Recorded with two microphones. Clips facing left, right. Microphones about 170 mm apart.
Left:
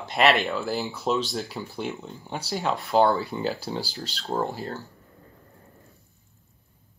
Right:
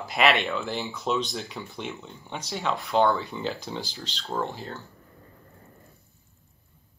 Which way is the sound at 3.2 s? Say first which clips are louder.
Left 3 dB; 40° left (ahead or behind).